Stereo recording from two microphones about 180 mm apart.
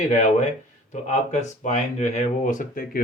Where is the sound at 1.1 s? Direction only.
40° left (ahead or behind).